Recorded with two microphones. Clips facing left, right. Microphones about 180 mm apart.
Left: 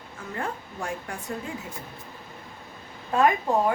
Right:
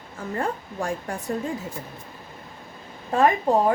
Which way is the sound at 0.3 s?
45° right (ahead or behind).